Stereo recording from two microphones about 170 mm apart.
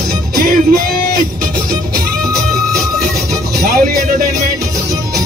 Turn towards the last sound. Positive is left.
turn(degrees=-65)  # may be behind; listen again after turning